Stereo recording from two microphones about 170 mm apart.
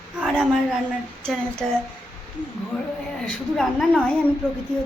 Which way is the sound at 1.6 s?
Centre (ahead or behind).